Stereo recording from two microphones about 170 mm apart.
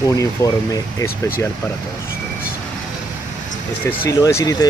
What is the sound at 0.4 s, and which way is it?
Speech, 15° left (ahead or behind).